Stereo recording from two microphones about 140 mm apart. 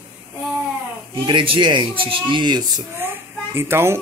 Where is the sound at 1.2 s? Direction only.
35° right (ahead or behind).